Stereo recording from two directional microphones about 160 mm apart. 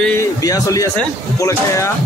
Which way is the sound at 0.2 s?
20° left (ahead or behind).